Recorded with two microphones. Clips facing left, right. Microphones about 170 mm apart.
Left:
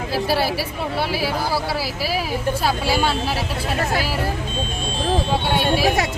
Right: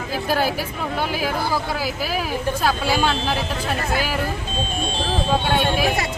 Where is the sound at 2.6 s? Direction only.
10° left (ahead or behind).